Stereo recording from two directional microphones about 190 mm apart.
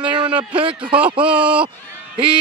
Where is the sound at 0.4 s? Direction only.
25° right (ahead or behind).